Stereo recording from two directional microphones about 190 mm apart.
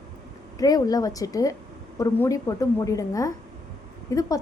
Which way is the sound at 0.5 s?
20° left (ahead or behind).